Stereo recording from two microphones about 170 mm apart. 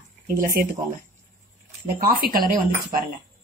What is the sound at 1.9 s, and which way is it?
Speech, 60° right (ahead or behind).